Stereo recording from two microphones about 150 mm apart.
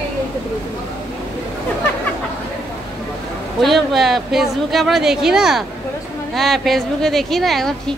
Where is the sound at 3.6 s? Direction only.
Centre (ahead or behind).